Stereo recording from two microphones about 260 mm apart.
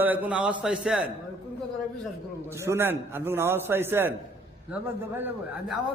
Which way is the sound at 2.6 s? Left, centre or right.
Centre.